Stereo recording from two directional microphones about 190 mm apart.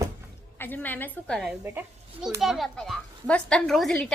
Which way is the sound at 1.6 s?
10° right (ahead or behind).